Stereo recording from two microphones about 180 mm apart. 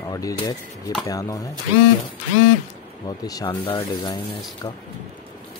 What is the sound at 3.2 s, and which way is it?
Speech, 20° left (ahead or behind).